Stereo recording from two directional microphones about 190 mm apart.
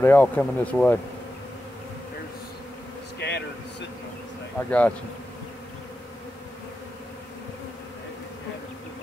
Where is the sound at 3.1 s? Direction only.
65° left (ahead or behind).